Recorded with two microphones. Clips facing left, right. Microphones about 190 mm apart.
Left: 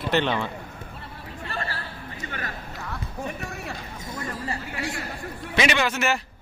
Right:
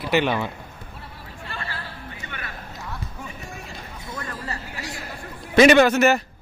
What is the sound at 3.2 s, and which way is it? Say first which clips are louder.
Music: left 5 dB; 70° left (ahead or behind).